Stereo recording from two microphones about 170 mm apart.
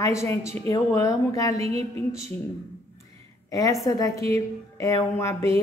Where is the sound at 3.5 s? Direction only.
20° left (ahead or behind).